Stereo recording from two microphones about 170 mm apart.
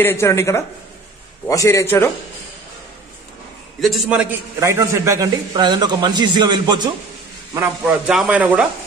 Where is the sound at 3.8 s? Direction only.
Centre (ahead or behind); by 6.9 s 25° right (ahead or behind).